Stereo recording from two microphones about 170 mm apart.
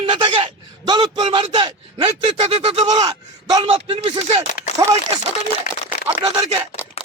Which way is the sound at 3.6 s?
35° right (ahead or behind).